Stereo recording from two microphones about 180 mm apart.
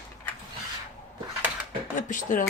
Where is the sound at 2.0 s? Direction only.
45° left (ahead or behind).